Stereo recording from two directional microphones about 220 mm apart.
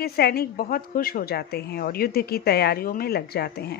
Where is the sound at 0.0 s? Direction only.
45° left (ahead or behind).